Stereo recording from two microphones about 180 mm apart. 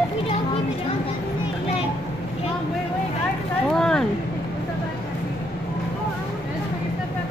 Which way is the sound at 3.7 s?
5° left (ahead or behind).